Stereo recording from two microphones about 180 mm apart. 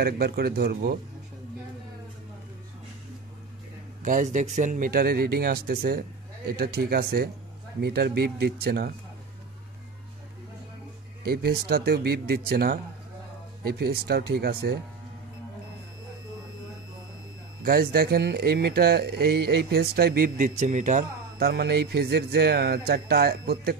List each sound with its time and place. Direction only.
0.0 s speech: 60° right (ahead or behind)
4.0 s speech: 45° right (ahead or behind); by 8.9 s 60° right (ahead or behind)
11.2 s speech: 60° right (ahead or behind)
17.6 s speech: 60° right (ahead or behind); by 21.5 s 45° right (ahead or behind)
21.5 s speech: 65° right (ahead or behind)